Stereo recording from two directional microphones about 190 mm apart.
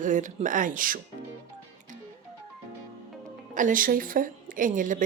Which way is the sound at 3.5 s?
45° right (ahead or behind).